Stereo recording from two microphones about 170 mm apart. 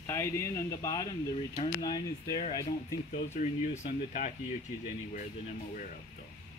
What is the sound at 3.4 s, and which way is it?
Speech, 45° left (ahead or behind).